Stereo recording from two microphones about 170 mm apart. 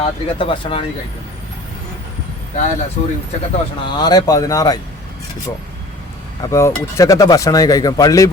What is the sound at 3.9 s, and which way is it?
Speech, 25° left (ahead or behind).